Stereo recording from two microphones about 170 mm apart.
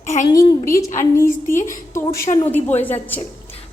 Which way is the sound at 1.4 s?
50° left (ahead or behind).